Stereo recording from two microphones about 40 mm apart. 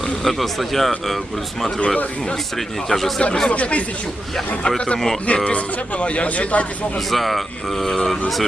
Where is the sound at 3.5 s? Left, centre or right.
Left.